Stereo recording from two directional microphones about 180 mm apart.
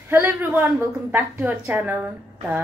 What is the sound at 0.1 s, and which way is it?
Speech, 10° right (ahead or behind).